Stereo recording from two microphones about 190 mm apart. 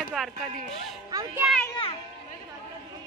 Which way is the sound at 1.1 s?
20° right (ahead or behind).